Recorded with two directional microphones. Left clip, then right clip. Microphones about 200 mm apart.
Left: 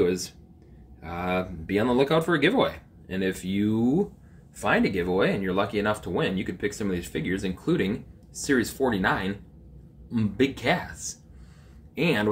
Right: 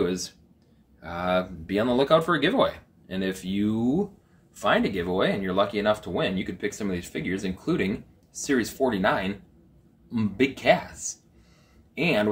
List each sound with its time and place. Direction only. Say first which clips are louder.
0.0 s speech: left 3 dB; centre (ahead or behind)
10.3 s speech: right 4 dB; 5° right (ahead or behind)